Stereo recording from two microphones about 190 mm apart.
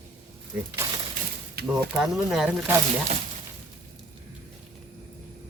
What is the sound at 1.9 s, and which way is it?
Speech, centre (ahead or behind).